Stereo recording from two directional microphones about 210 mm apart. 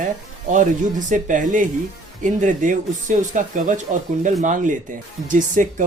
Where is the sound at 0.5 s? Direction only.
35° right (ahead or behind).